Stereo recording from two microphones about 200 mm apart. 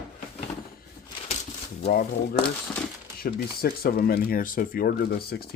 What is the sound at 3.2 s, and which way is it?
Speech, 50° left (ahead or behind).